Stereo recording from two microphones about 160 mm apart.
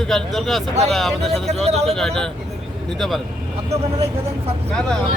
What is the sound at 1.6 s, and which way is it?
Speech, 40° right (ahead or behind).